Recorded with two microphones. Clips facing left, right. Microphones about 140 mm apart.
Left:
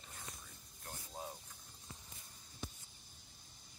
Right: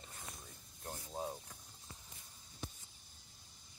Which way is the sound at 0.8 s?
25° right (ahead or behind).